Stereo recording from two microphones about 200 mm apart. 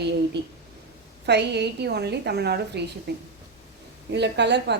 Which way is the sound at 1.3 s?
55° right (ahead or behind).